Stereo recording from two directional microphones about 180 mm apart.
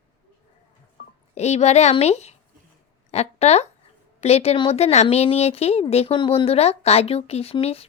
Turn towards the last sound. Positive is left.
turn(degrees=35)  # may be behind; listen again after turning